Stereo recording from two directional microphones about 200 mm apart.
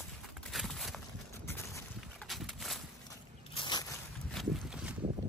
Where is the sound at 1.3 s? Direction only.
15° left (ahead or behind).